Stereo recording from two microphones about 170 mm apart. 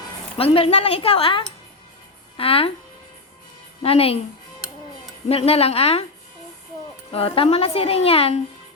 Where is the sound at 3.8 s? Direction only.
35° left (ahead or behind).